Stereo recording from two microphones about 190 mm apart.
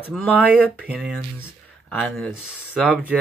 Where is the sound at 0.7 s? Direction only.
5° right (ahead or behind).